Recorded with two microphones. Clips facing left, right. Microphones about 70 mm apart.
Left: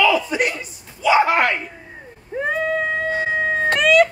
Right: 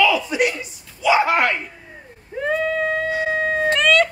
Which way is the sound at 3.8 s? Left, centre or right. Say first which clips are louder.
Left 3 dB; centre.